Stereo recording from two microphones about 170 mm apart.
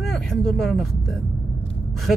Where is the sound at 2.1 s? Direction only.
Centre (ahead or behind).